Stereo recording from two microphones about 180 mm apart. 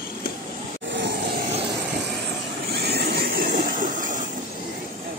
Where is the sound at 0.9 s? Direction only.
70° right (ahead or behind).